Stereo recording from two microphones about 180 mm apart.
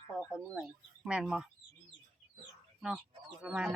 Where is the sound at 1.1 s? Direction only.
5° right (ahead or behind).